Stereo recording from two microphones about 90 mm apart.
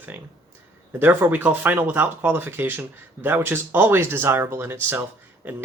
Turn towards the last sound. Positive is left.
turn(degrees=-25)  # may be behind; listen again after turning